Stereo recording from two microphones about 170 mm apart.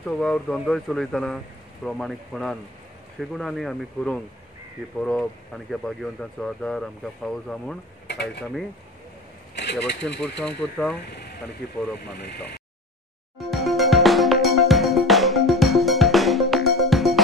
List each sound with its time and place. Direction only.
0.0 s speech: 5° left (ahead or behind)
9.6 s speech: 90° left
10.4 s speech: 5° left (ahead or behind)
12.2 s speech: 75° left (ahead or behind)
13.4 s music: centre (ahead or behind)